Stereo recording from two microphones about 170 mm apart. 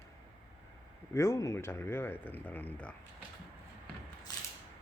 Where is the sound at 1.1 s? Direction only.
15° left (ahead or behind).